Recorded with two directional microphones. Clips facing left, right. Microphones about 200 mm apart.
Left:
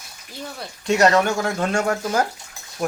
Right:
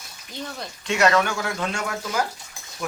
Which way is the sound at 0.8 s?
35° left (ahead or behind).